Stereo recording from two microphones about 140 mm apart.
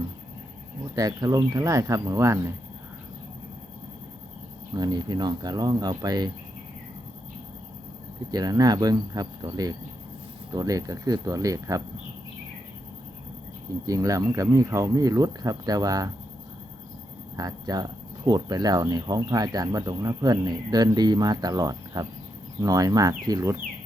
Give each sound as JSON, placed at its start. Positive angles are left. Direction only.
{"t": 0.9, "sound": "speech", "side_deg": -25}
{"t": 4.7, "sound": "speech", "side_deg": -30}
{"t": 8.3, "sound": "speech", "side_deg": -30}
{"t": 13.8, "sound": "speech", "side_deg": -25}
{"t": 17.3, "sound": "speech", "side_deg": -25}